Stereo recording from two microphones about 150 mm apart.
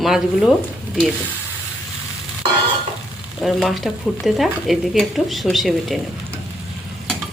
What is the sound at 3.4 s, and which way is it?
Speech, centre (ahead or behind).